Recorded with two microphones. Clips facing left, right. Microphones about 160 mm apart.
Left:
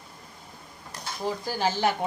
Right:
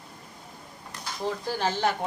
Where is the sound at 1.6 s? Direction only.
10° left (ahead or behind).